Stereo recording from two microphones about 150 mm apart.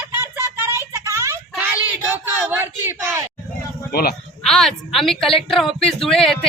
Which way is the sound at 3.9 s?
90° left.